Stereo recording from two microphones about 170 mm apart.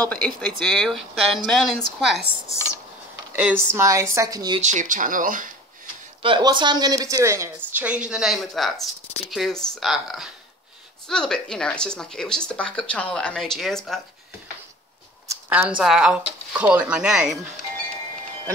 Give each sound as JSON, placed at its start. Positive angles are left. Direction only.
{"t": 0.1, "sound": "speech", "side_deg": 5}
{"t": 3.3, "sound": "speech", "side_deg": -10}
{"t": 4.6, "sound": "speech", "side_deg": -45}
{"t": 6.2, "sound": "speech", "side_deg": -30}
{"t": 15.2, "sound": "a sound", "side_deg": -15}
{"t": 15.8, "sound": "speech", "side_deg": -5}